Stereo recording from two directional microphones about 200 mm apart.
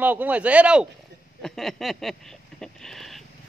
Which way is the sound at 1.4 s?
Centre (ahead or behind).